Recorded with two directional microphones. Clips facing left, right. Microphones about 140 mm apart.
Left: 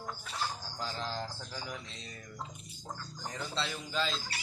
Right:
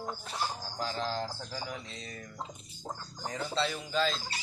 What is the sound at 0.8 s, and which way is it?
Speech, centre (ahead or behind).